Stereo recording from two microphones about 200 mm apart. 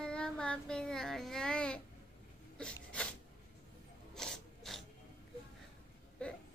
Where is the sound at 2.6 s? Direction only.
5° left (ahead or behind).